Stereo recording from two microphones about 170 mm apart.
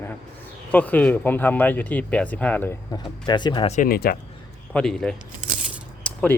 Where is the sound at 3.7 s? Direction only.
55° left (ahead or behind).